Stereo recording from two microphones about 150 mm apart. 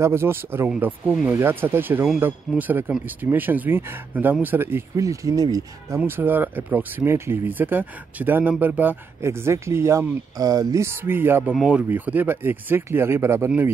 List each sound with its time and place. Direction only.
0.0 s speech: 15° right (ahead or behind)